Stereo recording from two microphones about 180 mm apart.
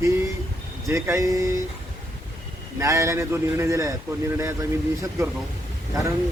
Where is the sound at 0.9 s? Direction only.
15° right (ahead or behind).